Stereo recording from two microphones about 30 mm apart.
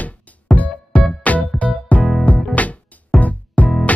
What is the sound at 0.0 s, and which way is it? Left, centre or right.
Music, left.